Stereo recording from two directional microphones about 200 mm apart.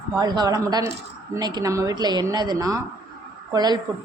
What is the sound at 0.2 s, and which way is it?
A woman's voice, 20° right (ahead or behind).